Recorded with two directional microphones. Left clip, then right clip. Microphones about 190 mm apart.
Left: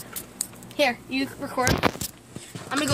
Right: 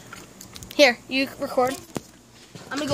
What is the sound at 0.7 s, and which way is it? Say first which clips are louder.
Speech: right 6 dB; 55° right (ahead or behind).